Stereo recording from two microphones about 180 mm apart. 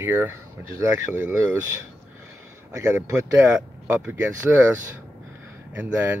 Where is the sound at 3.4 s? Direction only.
5° right (ahead or behind).